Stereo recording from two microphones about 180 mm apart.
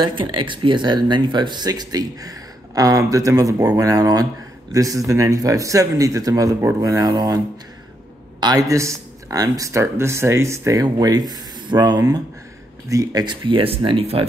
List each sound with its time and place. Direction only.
0.0 s speech: 25° right (ahead or behind)